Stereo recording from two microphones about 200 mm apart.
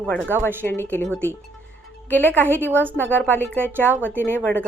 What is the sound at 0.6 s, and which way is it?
A woman's voice, 10° left (ahead or behind).